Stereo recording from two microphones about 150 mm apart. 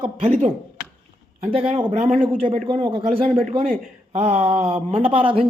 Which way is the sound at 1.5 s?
35° right (ahead or behind).